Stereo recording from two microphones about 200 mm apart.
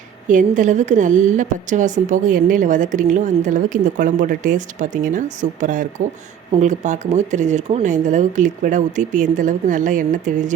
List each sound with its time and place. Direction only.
0.3 s a woman's voice: 40° right (ahead or behind)